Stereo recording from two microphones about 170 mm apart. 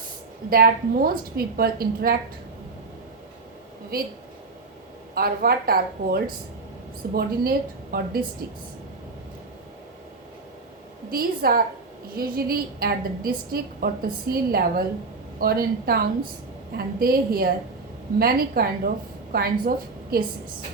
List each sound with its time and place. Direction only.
0.5 s a woman's voice: 60° right (ahead or behind)
3.9 s a woman's voice: 60° right (ahead or behind)
5.1 s a woman's voice: 60° right (ahead or behind)
11.1 s a woman's voice: 60° right (ahead or behind)